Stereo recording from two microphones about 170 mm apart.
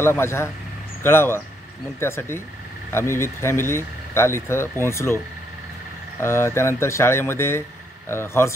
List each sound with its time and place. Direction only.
0.0 s speech: 15° left (ahead or behind)
6.2 s speech: 15° left (ahead or behind)